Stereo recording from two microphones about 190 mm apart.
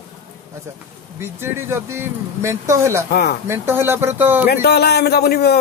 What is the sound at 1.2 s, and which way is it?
Speech, 10° right (ahead or behind).